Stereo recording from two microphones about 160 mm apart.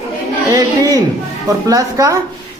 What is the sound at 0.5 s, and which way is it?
Speech, 20° right (ahead or behind).